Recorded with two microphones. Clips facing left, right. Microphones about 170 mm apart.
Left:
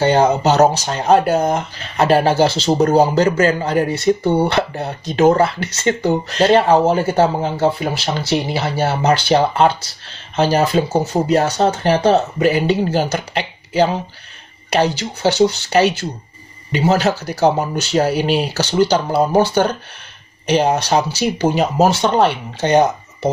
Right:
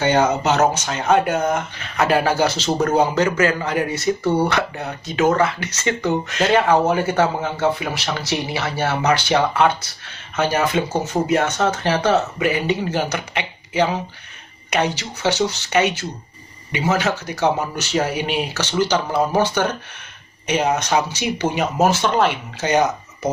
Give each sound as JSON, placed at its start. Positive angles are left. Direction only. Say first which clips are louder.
{"t": 0.0, "sound": "speech", "louder": "left 4 dB", "side_deg": 35}